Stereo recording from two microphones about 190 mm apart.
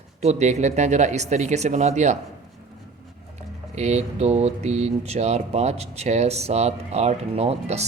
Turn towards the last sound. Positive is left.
turn(degrees=-35)  # may be behind; listen again after turning